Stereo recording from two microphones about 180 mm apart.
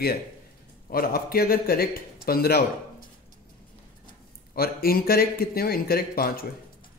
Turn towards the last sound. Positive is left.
turn(degrees=55)  # may be behind; listen again after turning